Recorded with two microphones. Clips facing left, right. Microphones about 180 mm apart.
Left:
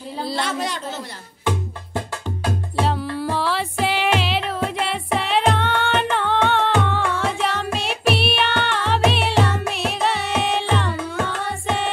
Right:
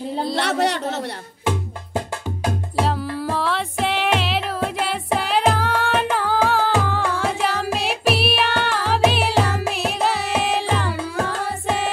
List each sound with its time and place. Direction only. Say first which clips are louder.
0.4 s speech: right 6 dB; 70° right (ahead or behind)
2.8 s music: even; centre (ahead or behind)
11.1 s music: right 1 dB; 35° right (ahead or behind)